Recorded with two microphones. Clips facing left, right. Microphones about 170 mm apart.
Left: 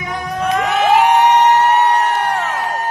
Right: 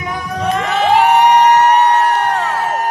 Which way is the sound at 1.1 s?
10° right (ahead or behind).